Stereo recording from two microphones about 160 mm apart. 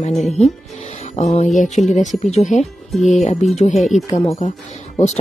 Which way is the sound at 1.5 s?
Centre (ahead or behind).